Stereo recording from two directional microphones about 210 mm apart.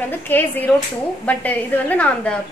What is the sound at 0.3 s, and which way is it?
A woman's voice, 10° left (ahead or behind).